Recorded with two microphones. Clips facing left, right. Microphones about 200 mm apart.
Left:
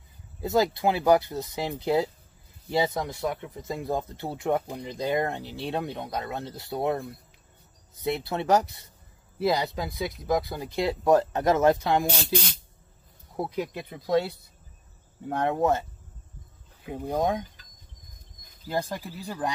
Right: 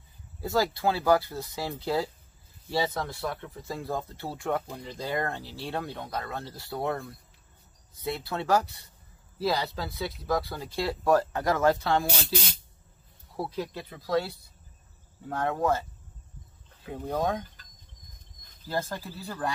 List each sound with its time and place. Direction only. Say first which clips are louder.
0.4 s speech: left 3 dB; 20° left (ahead or behind)
13.4 s speech: left 3 dB; 15° left (ahead or behind)
16.8 s speech: left 2 dB; 15° left (ahead or behind)
18.7 s speech: left 2 dB; 15° left (ahead or behind)